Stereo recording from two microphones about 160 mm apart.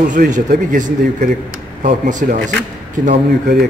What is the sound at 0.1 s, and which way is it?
A man's voice, 55° right (ahead or behind).